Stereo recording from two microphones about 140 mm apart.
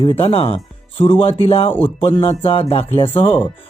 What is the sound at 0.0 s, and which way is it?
Speech, 40° left (ahead or behind).